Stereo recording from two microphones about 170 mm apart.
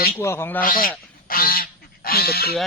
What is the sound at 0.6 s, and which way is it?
Speech, 55° left (ahead or behind).